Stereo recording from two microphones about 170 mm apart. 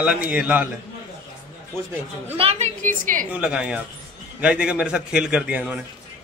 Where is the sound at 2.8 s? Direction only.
50° right (ahead or behind).